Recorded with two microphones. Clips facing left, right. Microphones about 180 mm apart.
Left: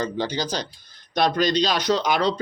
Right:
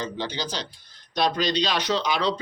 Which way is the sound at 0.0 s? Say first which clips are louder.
Left 5 dB; 45° left (ahead or behind).